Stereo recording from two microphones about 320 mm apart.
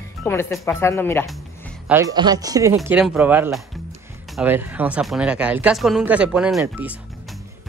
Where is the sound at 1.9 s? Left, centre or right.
Centre.